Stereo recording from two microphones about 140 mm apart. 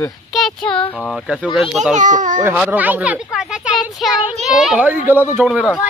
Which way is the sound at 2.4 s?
10° right (ahead or behind).